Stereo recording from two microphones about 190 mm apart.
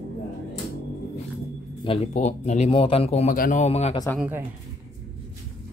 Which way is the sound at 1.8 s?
30° left (ahead or behind).